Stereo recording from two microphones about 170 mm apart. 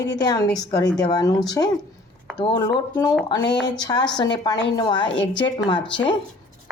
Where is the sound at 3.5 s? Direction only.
90° left.